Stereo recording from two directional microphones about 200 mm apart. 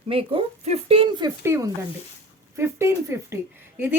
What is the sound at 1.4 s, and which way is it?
A woman's voice, 15° right (ahead or behind).